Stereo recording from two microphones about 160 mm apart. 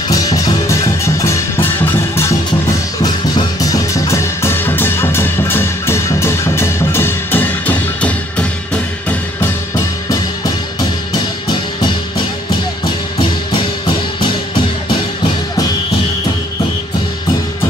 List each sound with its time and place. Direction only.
0.1 s music: 20° left (ahead or behind)
3.0 s music: 20° left (ahead or behind)